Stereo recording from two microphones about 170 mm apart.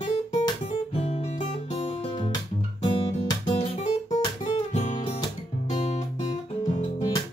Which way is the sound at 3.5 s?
40° left (ahead or behind).